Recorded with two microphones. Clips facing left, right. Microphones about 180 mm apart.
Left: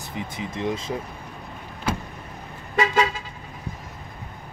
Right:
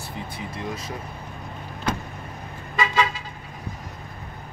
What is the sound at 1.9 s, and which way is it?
Vehicle, 10° left (ahead or behind).